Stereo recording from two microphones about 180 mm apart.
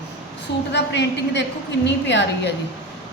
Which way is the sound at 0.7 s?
70° left (ahead or behind).